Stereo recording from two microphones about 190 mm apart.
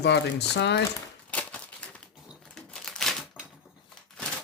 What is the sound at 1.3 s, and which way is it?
Typewriter, 5° left (ahead or behind).